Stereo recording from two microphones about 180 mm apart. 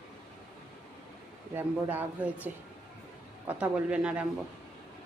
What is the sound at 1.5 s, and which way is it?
Speech, 10° right (ahead or behind).